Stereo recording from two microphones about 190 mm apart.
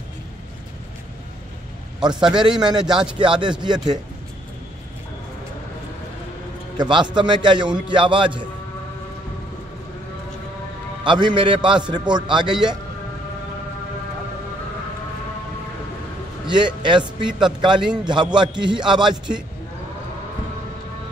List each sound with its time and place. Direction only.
2.0 s a man's voice: 20° right (ahead or behind)
2.8 s speech: 5° right (ahead or behind)
3.2 s a man's voice: 25° right (ahead or behind)
6.8 s a man's voice: 25° right (ahead or behind)
11.1 s a man's voice: 25° right (ahead or behind)
12.4 s speech: 5° right (ahead or behind)
16.4 s a man's voice: 25° right (ahead or behind)